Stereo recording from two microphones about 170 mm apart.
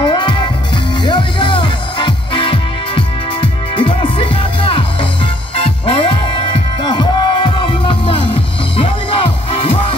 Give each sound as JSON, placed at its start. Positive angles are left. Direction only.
{"t": 0.0, "sound": "music", "side_deg": 25}